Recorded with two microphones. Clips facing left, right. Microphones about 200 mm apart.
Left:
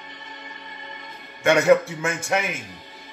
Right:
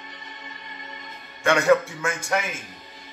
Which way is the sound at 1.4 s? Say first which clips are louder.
Left 2 dB; 20° left (ahead or behind).